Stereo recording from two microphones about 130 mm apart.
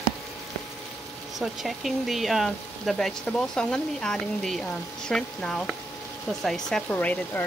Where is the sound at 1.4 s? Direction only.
Centre (ahead or behind).